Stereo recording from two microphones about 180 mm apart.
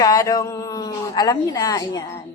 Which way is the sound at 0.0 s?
20° left (ahead or behind).